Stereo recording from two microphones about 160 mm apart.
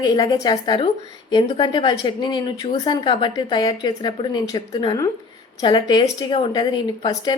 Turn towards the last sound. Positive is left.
turn(degrees=25)  # may be behind; listen again after turning